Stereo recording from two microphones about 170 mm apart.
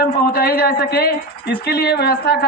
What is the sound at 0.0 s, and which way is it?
A woman's voice, 65° left (ahead or behind).